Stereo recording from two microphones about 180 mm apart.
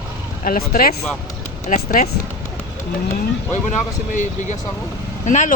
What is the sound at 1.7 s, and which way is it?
Speech, 45° left (ahead or behind).